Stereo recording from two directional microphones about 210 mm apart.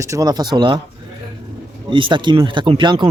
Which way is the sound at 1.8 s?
25° right (ahead or behind).